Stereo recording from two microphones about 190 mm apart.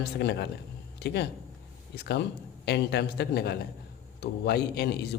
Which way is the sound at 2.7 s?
60° left (ahead or behind).